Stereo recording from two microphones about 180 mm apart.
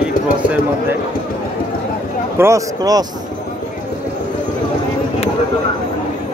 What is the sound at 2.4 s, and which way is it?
Speech, 20° right (ahead or behind).